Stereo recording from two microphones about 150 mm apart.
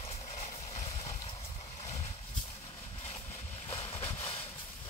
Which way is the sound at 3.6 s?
40° left (ahead or behind).